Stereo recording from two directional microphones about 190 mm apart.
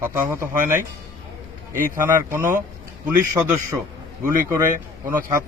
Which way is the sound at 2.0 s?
10° right (ahead or behind).